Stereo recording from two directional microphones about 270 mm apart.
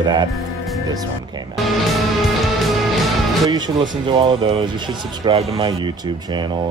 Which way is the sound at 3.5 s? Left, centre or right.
Centre.